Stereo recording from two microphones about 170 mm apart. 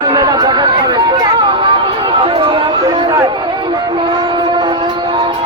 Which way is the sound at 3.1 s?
25° right (ahead or behind).